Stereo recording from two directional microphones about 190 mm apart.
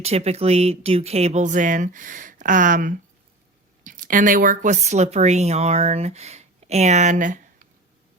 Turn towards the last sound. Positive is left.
turn(degrees=-40)  # may be behind; listen again after turning